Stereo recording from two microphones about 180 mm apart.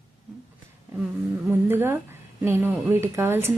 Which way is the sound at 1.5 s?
10° right (ahead or behind).